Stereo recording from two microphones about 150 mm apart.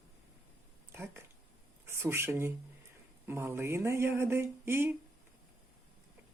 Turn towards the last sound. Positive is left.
turn(degrees=-15)  # may be behind; listen again after turning